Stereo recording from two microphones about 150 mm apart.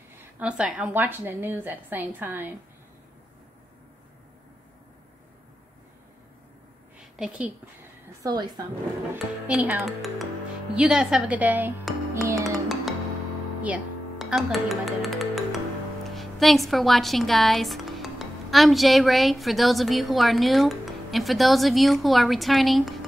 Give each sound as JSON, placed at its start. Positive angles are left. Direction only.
{"t": 0.4, "sound": "a woman's voice", "side_deg": -5}
{"t": 7.2, "sound": "a woman's voice", "side_deg": -10}
{"t": 8.2, "sound": "speech", "side_deg": -25}
{"t": 9.1, "sound": "a woman's voice", "side_deg": -10}
{"t": 13.6, "sound": "music", "side_deg": -5}
{"t": 16.2, "sound": "speech", "side_deg": 0}